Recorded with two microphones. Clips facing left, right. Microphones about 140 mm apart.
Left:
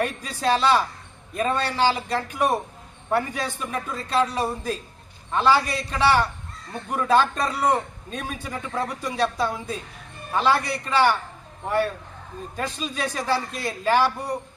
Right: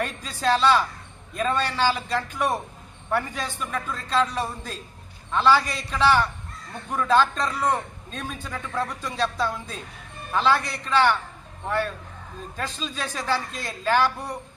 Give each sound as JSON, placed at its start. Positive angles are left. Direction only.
{"t": 0.0, "sound": "a man's voice", "side_deg": 15}